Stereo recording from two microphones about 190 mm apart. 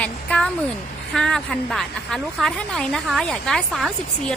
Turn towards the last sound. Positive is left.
turn(degrees=0)  # may be behind; listen again after turning